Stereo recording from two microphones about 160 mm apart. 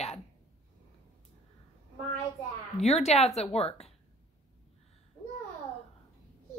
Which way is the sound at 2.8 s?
40° left (ahead or behind).